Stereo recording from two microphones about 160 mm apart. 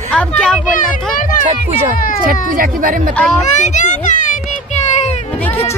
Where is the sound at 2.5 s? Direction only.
55° right (ahead or behind).